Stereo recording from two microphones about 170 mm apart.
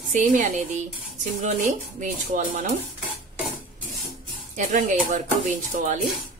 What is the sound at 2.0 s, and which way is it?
Speech, 45° right (ahead or behind).